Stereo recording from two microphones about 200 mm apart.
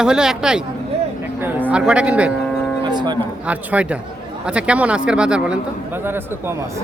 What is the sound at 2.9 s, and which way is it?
Speech, 20° right (ahead or behind).